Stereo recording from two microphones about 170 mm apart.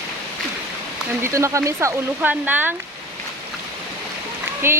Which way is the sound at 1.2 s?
15° right (ahead or behind).